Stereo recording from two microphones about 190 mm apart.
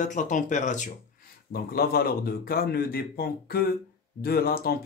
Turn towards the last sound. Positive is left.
turn(degrees=50)  # may be behind; listen again after turning